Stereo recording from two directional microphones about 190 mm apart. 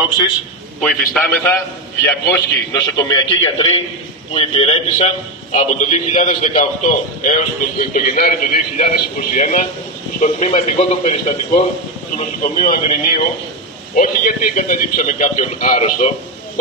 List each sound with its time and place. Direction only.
1.1 s a man's voice: 5° left (ahead or behind); by 16.1 s 40° left (ahead or behind)